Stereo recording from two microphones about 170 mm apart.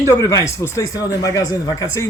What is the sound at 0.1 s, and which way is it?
Speech, 20° left (ahead or behind).